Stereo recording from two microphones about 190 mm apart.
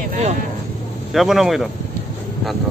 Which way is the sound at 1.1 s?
Centre (ahead or behind).